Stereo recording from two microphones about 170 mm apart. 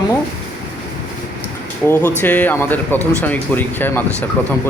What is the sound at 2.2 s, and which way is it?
Speech, 10° left (ahead or behind).